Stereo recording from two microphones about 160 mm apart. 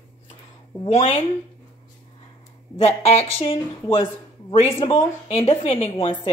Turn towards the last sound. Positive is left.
turn(degrees=35)  # may be behind; listen again after turning